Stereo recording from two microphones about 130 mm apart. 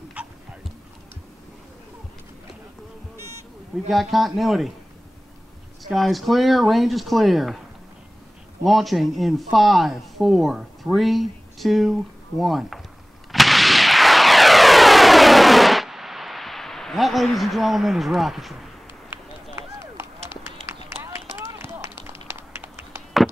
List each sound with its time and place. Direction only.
0.2 s a sound: 10° right (ahead or behind)
3.9 s a man's voice: centre (ahead or behind)
5.9 s a man's voice: centre (ahead or behind)
8.6 s a man's voice: centre (ahead or behind)
13.3 s a sound: centre (ahead or behind)
19.5 s clip-clop: 20° right (ahead or behind)
21.0 s run: 20° right (ahead or behind)